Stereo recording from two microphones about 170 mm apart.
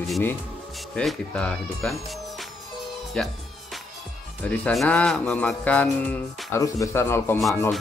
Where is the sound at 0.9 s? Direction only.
5° left (ahead or behind).